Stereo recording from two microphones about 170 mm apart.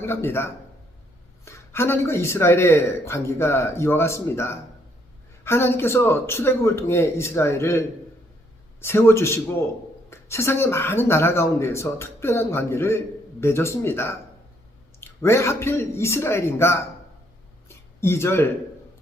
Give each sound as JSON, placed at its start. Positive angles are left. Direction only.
{"t": 0.0, "sound": "speech", "side_deg": 15}
{"t": 18.0, "sound": "speech", "side_deg": 15}